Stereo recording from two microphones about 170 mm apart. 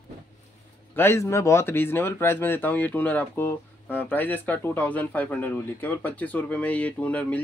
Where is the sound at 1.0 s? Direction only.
15° left (ahead or behind).